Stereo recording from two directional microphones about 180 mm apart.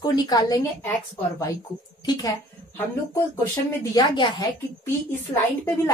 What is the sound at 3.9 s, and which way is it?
Speech, 25° left (ahead or behind).